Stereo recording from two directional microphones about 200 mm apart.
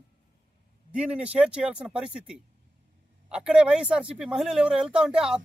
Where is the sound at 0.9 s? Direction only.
5° right (ahead or behind).